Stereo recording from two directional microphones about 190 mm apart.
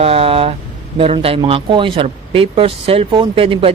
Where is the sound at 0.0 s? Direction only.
30° right (ahead or behind).